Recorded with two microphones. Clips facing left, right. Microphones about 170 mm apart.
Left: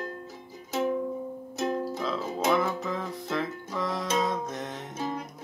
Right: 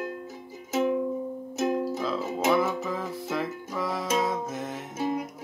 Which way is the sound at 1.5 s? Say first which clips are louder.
Right 3 dB; 20° right (ahead or behind).